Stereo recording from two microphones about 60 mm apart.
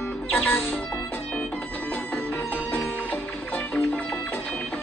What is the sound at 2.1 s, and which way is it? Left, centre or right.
Music, left.